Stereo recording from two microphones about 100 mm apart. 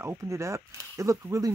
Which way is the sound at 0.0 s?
25° right (ahead or behind).